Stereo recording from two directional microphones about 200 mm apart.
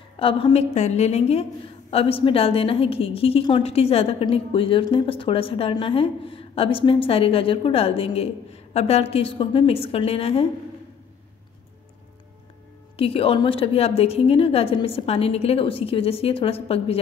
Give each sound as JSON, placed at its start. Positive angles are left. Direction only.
{"t": 0.2, "sound": "a woman's voice", "side_deg": 25}
{"t": 12.9, "sound": "a woman's voice", "side_deg": 30}